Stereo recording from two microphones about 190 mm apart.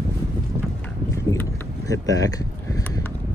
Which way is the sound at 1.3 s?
15° left (ahead or behind).